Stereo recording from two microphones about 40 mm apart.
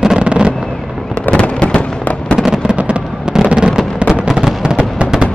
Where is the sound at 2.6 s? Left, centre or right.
Right.